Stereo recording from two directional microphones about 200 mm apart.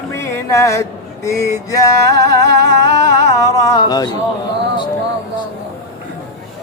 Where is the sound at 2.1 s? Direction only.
55° right (ahead or behind).